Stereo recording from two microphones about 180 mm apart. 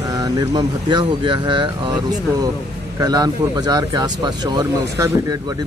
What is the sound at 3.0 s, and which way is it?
Speech, 20° right (ahead or behind).